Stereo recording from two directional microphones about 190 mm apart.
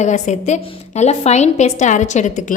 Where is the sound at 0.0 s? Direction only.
40° left (ahead or behind).